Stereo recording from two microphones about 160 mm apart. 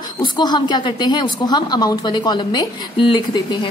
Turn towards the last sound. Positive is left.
turn(degrees=30)  # may be behind; listen again after turning